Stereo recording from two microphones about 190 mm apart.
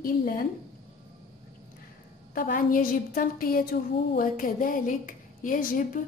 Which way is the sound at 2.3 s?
45° left (ahead or behind).